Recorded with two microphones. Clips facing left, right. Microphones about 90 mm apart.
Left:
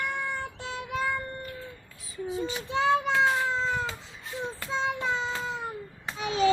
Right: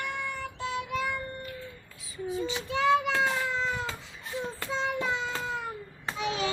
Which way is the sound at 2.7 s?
25° left (ahead or behind).